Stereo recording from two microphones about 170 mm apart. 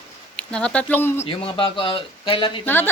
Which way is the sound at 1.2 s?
35° left (ahead or behind).